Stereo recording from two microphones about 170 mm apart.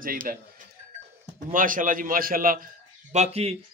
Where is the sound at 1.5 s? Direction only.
50° right (ahead or behind).